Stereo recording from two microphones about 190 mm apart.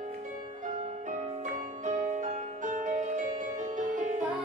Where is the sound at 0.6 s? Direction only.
40° right (ahead or behind).